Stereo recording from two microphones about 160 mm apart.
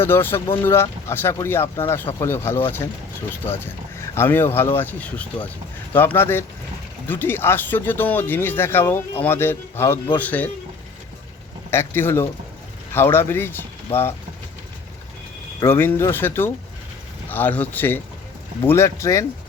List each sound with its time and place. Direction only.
0.0 s speech: 15° left (ahead or behind)
4.1 s speech: 15° left (ahead or behind)
11.7 s speech: 15° left (ahead or behind)
15.6 s speech: 15° left (ahead or behind)